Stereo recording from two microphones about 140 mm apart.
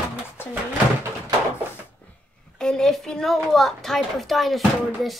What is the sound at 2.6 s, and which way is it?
A woman's voice, 5° left (ahead or behind).